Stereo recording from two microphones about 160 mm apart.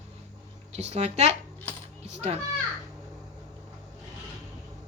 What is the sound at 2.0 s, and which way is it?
Children playing, 40° right (ahead or behind).